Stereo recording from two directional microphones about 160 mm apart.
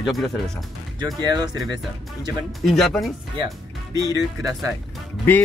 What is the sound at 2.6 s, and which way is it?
Speech, centre (ahead or behind).